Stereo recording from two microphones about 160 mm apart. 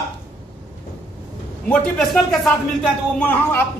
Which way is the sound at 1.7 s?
5° left (ahead or behind).